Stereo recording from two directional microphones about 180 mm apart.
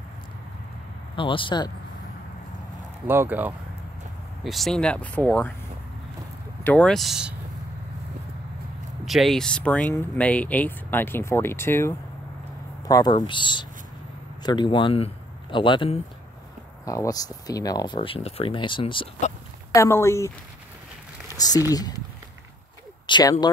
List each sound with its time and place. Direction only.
1.1 s speech: 30° left (ahead or behind)
3.1 s speech: 10° right (ahead or behind); by 5.5 s 5° left (ahead or behind)
6.6 s speech: 5° left (ahead or behind)
9.0 s speech: centre (ahead or behind); by 19.0 s 30° left (ahead or behind)
19.7 s speech: 15° left (ahead or behind)
21.4 s speech: 20° left (ahead or behind)
23.0 s bird: 25° left (ahead or behind)